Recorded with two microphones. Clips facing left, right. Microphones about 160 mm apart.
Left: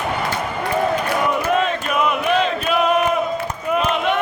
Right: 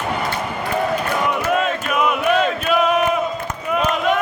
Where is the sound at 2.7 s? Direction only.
Centre (ahead or behind).